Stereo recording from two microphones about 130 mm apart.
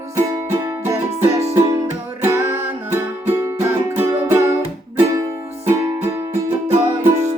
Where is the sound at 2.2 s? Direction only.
20° right (ahead or behind).